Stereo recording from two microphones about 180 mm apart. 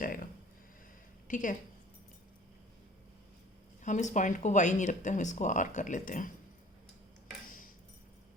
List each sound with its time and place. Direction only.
0.0 s speech: 50° left (ahead or behind)
1.3 s speech: 45° left (ahead or behind)
3.8 s speech: 45° left (ahead or behind)